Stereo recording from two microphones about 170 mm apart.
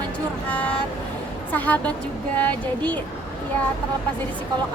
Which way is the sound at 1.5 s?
10° left (ahead or behind).